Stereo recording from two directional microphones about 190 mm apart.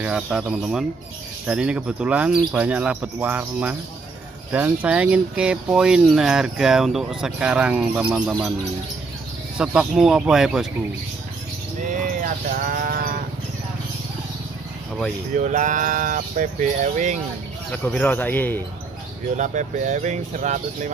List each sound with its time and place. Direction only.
0.0 s speech: 5° right (ahead or behind)
9.6 s speech: 5° right (ahead or behind)
11.9 s speech: 45° right (ahead or behind)
15.3 s speech: 40° right (ahead or behind)
17.6 s speech: 10° left (ahead or behind)
19.3 s speech: 40° right (ahead or behind)